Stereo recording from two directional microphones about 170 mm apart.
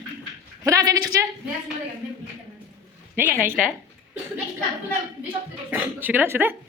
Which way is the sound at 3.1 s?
10° right (ahead or behind).